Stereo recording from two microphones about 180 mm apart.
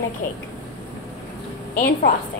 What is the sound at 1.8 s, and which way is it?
Speech, 55° left (ahead or behind).